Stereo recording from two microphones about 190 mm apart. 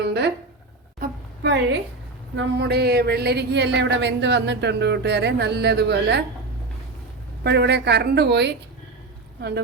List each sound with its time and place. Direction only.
0.0 s speech: 60° right (ahead or behind)
0.9 s a sound: 65° right (ahead or behind)
2.3 s speech: 70° right (ahead or behind)
7.4 s speech: 60° right (ahead or behind)